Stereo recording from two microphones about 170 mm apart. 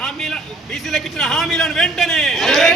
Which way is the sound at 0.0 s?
Centre (ahead or behind).